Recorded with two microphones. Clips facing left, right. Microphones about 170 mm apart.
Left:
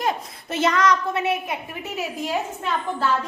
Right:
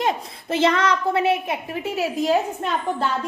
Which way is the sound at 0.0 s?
25° right (ahead or behind).